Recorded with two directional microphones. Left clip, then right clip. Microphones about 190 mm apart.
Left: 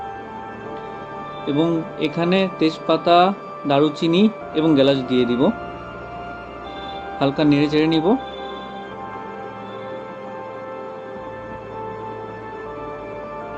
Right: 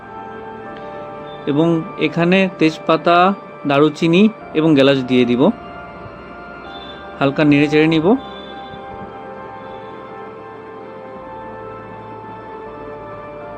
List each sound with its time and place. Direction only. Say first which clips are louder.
1.5 s speech: right 4 dB; 45° right (ahead or behind)
7.2 s speech: right 4 dB; 45° right (ahead or behind)